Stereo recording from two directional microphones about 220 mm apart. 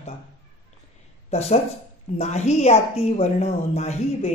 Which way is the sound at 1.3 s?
30° left (ahead or behind).